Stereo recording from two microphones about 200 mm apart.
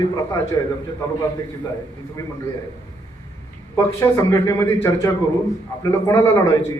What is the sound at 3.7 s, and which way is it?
A man's voice, 15° left (ahead or behind).